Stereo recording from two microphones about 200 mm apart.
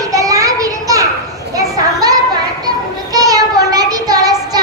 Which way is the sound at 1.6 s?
15° right (ahead or behind).